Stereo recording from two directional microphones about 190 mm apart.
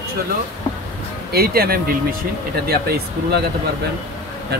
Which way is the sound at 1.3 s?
55° right (ahead or behind).